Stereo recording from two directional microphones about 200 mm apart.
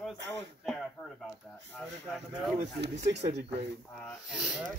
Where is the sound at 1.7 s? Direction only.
Centre (ahead or behind).